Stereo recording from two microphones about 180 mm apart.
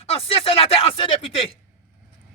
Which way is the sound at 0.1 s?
30° left (ahead or behind).